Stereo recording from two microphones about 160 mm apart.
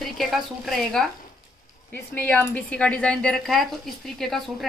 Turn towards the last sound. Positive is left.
turn(degrees=0)  # may be behind; listen again after turning